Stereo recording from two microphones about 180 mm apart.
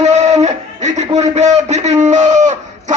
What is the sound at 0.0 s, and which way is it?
A man's voice, 40° right (ahead or behind).